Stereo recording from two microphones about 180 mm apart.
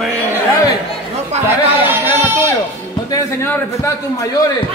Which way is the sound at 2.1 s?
15° right (ahead or behind).